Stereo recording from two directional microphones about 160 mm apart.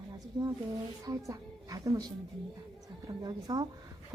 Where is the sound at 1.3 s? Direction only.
20° right (ahead or behind).